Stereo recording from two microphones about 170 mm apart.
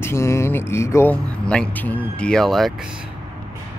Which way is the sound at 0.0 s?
15° left (ahead or behind).